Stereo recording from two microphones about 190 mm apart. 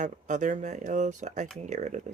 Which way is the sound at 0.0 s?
40° right (ahead or behind).